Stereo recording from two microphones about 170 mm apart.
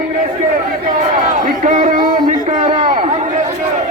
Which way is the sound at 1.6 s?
50° right (ahead or behind).